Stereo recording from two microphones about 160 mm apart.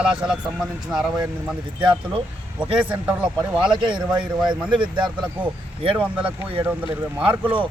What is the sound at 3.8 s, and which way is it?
A man's voice, 30° right (ahead or behind).